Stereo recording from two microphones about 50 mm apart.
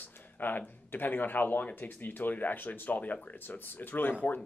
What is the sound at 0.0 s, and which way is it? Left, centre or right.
Speech, left.